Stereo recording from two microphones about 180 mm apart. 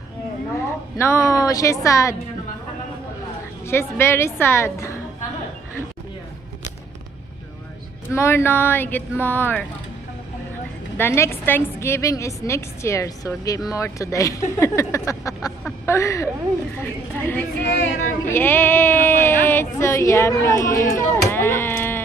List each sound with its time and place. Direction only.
0.6 s a woman's voice: 15° left (ahead or behind)
3.6 s a woman's voice: 15° left (ahead or behind)
8.1 s a woman's voice: 15° left (ahead or behind)
11.0 s a woman's voice: 15° left (ahead or behind)